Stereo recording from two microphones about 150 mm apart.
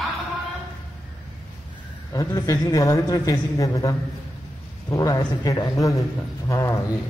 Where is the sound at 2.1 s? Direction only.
25° left (ahead or behind).